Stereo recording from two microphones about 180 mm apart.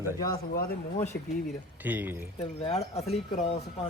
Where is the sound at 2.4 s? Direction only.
35° left (ahead or behind).